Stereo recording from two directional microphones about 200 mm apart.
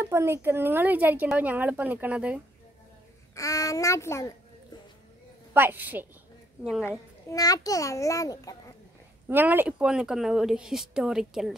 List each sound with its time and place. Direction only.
0.0 s a woman's voice: 10° right (ahead or behind)
3.3 s a child's voice: 15° left (ahead or behind)
5.5 s a woman's voice: 10° right (ahead or behind)
6.8 s a child's voice: 15° left (ahead or behind)
9.3 s speech: 10° right (ahead or behind)